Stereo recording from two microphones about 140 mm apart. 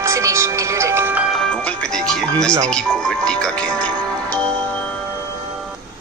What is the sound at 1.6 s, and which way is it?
Speech, 5° left (ahead or behind).